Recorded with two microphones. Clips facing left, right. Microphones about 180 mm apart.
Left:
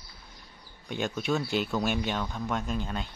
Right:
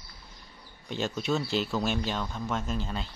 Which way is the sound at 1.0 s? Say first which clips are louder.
Even; centre (ahead or behind).